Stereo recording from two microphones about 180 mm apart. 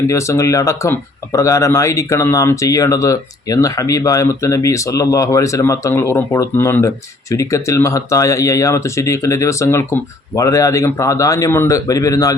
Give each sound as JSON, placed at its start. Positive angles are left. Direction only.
{"t": 0.1, "sound": "speech", "side_deg": 15}